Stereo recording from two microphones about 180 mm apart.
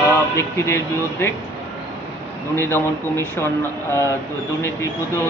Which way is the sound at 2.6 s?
15° left (ahead or behind).